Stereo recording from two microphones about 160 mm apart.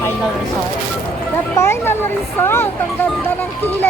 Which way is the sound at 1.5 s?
15° left (ahead or behind).